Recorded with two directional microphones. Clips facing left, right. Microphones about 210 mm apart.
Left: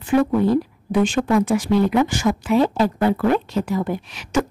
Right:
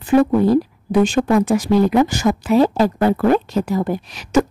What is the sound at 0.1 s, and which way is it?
Speech, 40° right (ahead or behind).